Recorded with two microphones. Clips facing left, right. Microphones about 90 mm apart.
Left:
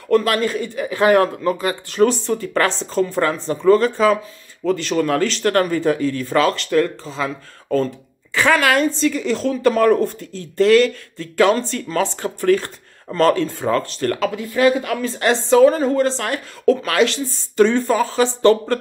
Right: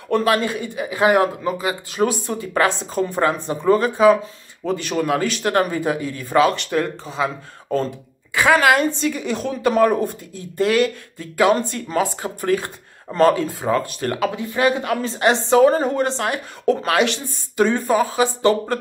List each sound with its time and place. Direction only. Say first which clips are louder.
0.1 s a man's voice: left 2 dB; 20° right (ahead or behind)